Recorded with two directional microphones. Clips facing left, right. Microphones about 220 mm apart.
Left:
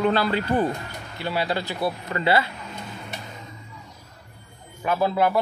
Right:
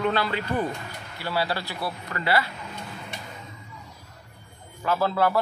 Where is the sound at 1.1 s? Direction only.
20° left (ahead or behind).